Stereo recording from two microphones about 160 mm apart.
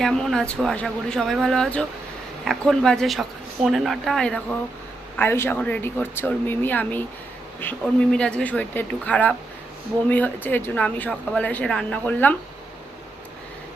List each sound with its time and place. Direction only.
0.0 s speech: centre (ahead or behind)
5.1 s a woman's voice: 15° left (ahead or behind)